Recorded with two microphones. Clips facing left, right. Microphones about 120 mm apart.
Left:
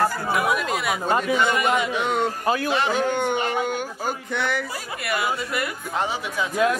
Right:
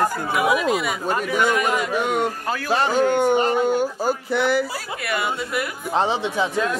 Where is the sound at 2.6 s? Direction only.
40° right (ahead or behind).